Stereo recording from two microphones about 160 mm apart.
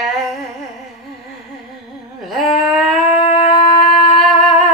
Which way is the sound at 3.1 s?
40° left (ahead or behind).